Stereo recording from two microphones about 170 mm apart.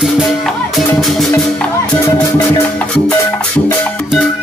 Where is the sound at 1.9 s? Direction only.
15° left (ahead or behind).